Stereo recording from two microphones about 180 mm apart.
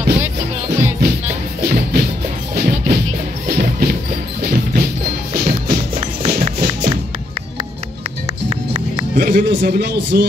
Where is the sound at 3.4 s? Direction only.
60° right (ahead or behind).